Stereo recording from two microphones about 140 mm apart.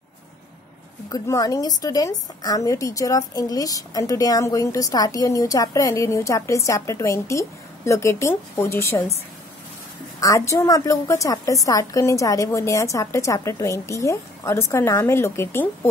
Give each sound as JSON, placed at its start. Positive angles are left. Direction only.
{"t": 1.1, "sound": "a woman's voice", "side_deg": 25}
{"t": 10.2, "sound": "a woman's voice", "side_deg": 20}